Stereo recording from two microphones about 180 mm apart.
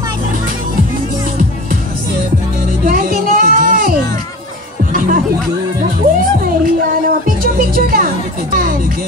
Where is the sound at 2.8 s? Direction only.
50° right (ahead or behind).